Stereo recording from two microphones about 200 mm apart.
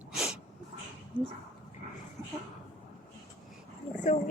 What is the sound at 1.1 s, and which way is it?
Dog, 10° right (ahead or behind).